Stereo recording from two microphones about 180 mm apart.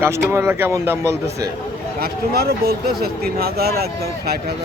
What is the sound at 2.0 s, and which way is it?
Speech, 60° right (ahead or behind).